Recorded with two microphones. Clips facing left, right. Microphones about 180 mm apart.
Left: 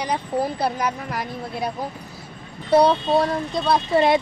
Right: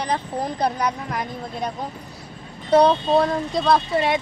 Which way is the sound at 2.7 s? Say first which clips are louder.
Right 1 dB; 10° left (ahead or behind).